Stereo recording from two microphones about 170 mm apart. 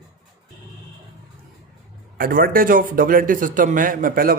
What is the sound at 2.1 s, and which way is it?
A man's voice, 55° right (ahead or behind).